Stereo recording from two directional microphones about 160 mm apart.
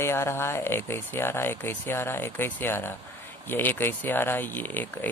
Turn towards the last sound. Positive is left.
turn(degrees=10)  # may be behind; listen again after turning